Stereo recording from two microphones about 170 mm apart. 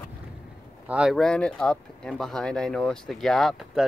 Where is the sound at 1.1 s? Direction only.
5° left (ahead or behind).